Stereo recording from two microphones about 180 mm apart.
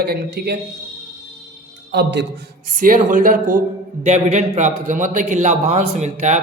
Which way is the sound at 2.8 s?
45° right (ahead or behind).